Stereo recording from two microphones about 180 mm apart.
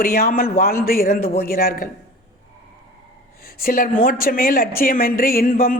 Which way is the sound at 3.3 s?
55° left (ahead or behind).